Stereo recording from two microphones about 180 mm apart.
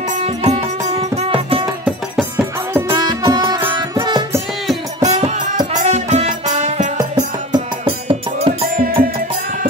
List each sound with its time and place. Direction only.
0.2 s music: 35° right (ahead or behind)
1.9 s music: 5° right (ahead or behind)
2.9 s music: 20° right (ahead or behind)
5.0 s music: 40° right (ahead or behind)
7.5 s music: 30° right (ahead or behind)
8.6 s music: 55° right (ahead or behind)